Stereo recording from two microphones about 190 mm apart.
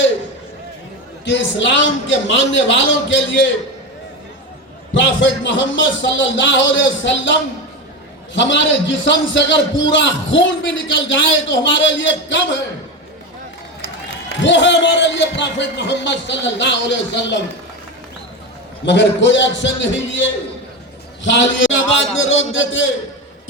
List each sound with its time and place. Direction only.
1.2 s a man's voice: 70° left (ahead or behind)
4.9 s a man's voice: 75° left (ahead or behind)
14.3 s a man's voice: 75° left (ahead or behind)
18.9 s a man's voice: 70° left (ahead or behind)
22.2 s a man's voice: 90° left